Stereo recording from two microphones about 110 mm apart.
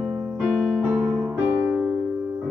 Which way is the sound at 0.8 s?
10° right (ahead or behind).